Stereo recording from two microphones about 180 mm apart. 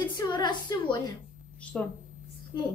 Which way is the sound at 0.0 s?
25° left (ahead or behind).